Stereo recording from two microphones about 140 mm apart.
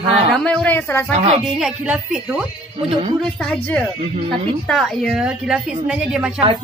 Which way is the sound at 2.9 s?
45° right (ahead or behind).